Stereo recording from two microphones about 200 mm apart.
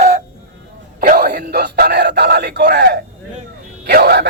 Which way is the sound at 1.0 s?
45° right (ahead or behind).